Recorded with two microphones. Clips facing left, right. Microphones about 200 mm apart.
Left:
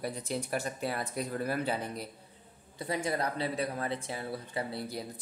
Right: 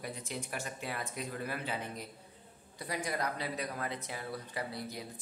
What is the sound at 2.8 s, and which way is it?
Speech, 25° left (ahead or behind).